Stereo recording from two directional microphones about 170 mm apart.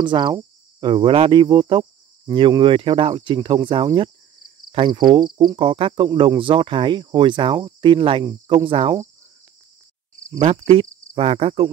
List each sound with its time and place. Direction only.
0.0 s cricket: 25° right (ahead or behind)
10.4 s cricket: 40° right (ahead or behind)